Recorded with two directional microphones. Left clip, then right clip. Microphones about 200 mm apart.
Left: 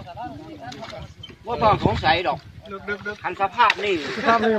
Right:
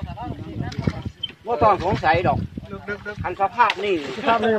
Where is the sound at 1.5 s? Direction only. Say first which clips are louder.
Right 1 dB; 35° right (ahead or behind).